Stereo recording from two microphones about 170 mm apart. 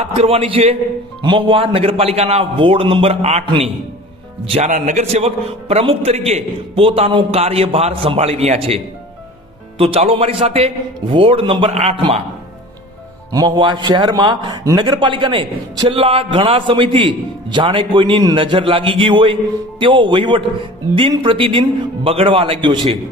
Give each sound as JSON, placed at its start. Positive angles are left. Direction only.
{"t": 0.0, "sound": "a man's voice", "side_deg": -35}
{"t": 13.3, "sound": "a man's voice", "side_deg": -25}